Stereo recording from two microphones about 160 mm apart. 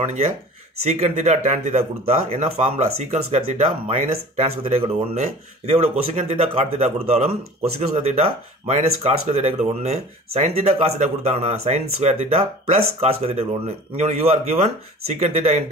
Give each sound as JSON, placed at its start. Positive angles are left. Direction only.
{"t": 0.0, "sound": "speech", "side_deg": -50}